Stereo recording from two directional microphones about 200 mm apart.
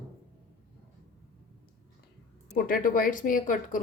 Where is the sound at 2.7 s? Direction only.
45° left (ahead or behind).